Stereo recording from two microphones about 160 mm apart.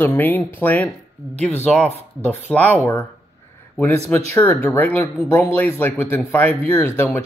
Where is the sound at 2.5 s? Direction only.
10° left (ahead or behind).